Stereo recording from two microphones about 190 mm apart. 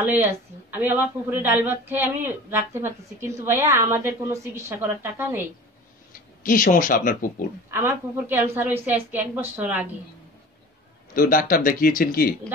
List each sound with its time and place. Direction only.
0.0 s speech: 10° right (ahead or behind)
6.1 s speech: 45° left (ahead or behind)
7.7 s speech: 10° right (ahead or behind)
11.1 s speech: 50° left (ahead or behind)